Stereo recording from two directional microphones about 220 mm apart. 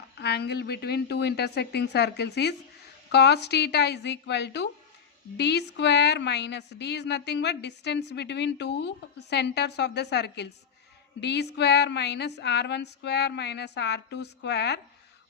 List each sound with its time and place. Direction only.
0.2 s speech: 50° left (ahead or behind)